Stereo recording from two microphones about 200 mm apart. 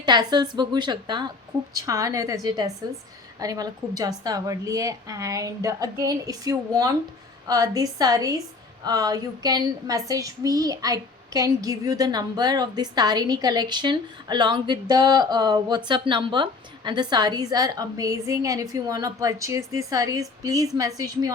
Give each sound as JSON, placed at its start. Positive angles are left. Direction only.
{"t": 0.0, "sound": "a woman's voice", "side_deg": -20}